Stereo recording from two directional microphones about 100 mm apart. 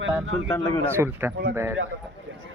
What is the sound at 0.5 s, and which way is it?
Speech, 45° left (ahead or behind).